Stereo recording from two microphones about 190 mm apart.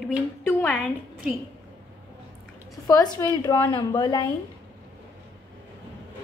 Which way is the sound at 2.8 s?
20° left (ahead or behind).